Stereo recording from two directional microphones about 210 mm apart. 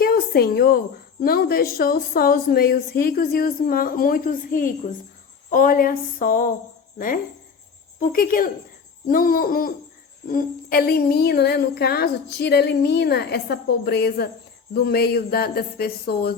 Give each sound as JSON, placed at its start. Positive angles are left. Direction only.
{"t": 0.0, "sound": "a sound", "side_deg": 45}
{"t": 1.2, "sound": "a woman's voice", "side_deg": 45}
{"t": 7.9, "sound": "a woman's voice", "side_deg": 40}